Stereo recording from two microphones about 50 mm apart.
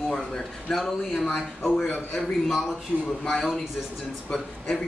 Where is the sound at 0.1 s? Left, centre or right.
Centre.